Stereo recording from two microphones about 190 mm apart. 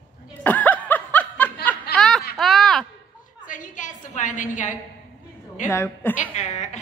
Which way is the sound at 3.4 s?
45° left (ahead or behind).